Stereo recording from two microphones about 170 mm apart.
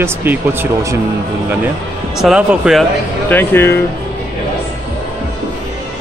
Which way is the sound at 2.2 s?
5° right (ahead or behind).